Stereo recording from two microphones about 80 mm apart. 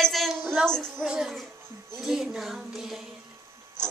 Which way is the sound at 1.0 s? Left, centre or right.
Centre.